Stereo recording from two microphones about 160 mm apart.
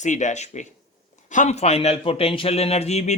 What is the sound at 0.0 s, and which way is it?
A man's voice, 50° left (ahead or behind).